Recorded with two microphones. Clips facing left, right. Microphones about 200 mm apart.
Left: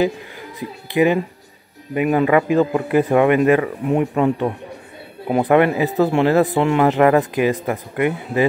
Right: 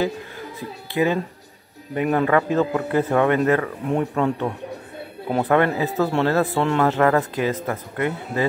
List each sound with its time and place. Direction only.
0.6 s speech: 15° left (ahead or behind)